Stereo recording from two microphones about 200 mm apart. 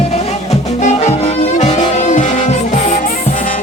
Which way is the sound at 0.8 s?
35° left (ahead or behind).